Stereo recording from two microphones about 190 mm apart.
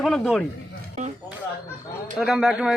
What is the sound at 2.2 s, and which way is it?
Speech, centre (ahead or behind).